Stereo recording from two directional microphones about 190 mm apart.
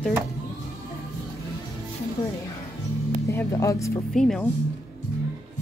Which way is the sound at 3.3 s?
15° left (ahead or behind).